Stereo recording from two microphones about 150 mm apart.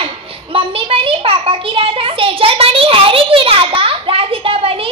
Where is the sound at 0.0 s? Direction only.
35° right (ahead or behind).